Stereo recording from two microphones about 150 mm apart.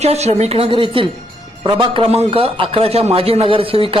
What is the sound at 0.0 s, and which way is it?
A woman's voice, 45° right (ahead or behind).